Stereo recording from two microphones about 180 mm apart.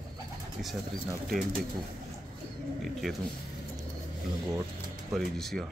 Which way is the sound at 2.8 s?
Centre (ahead or behind).